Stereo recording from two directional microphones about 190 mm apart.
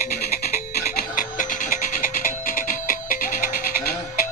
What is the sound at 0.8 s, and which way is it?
Music, 45° left (ahead or behind).